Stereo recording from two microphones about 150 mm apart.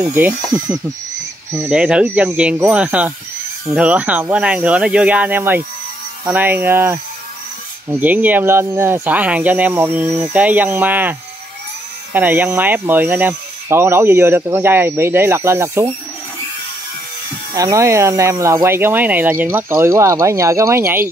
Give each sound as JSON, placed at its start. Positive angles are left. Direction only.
{"t": 0.0, "sound": "speech", "side_deg": -10}
{"t": 17.6, "sound": "speech", "side_deg": -20}